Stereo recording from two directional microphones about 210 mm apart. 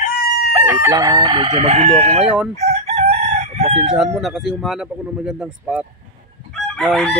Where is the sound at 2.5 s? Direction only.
30° right (ahead or behind).